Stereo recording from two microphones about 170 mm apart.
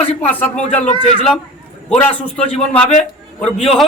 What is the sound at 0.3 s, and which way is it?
Speech, 10° left (ahead or behind).